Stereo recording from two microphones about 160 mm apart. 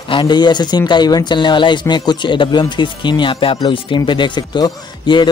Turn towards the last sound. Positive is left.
turn(degrees=30)  # may be behind; listen again after turning